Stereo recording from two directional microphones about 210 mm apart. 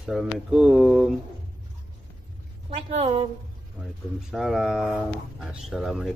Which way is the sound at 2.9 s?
30° right (ahead or behind).